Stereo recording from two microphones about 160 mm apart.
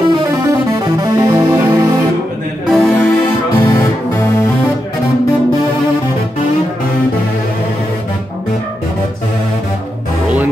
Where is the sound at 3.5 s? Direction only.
20° left (ahead or behind).